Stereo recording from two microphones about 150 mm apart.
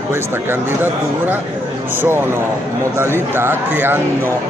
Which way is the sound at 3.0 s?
15° right (ahead or behind).